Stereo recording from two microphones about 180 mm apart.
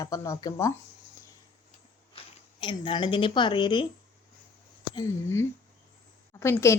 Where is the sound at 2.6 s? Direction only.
25° left (ahead or behind).